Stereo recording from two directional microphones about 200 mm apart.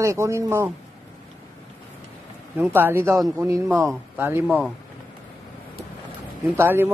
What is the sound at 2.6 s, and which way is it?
Speech, 10° right (ahead or behind).